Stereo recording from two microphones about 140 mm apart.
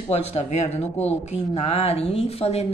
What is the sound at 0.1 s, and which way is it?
Speech, 50° left (ahead or behind).